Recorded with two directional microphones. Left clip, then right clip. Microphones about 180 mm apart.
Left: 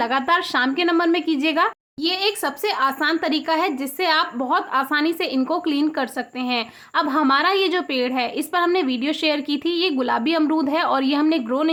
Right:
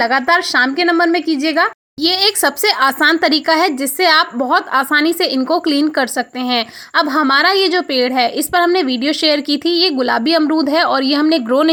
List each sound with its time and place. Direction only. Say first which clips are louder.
0.0 s a woman's voice: right 6 dB; 25° right (ahead or behind)
2.0 s a woman's voice: right 8 dB; 40° right (ahead or behind)